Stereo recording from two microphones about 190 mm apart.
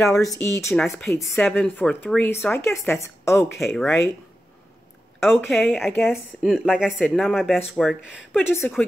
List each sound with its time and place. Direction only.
0.2 s speech: 15° left (ahead or behind)
0.7 s speech: centre (ahead or behind)
3.5 s speech: centre (ahead or behind)
5.3 s speech: 10° left (ahead or behind)